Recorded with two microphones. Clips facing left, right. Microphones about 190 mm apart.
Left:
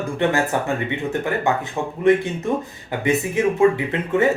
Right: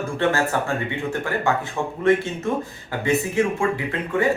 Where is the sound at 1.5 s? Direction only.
20° left (ahead or behind).